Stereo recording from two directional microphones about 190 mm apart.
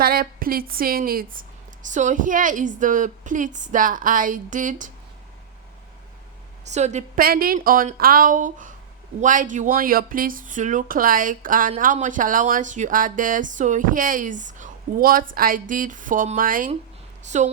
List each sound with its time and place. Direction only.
0.0 s speech: 50° right (ahead or behind)
6.7 s a woman's voice: 35° right (ahead or behind)
7.2 s a woman's voice: 50° right (ahead or behind)